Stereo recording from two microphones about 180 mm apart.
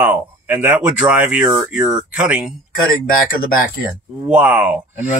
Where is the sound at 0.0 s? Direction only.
10° right (ahead or behind).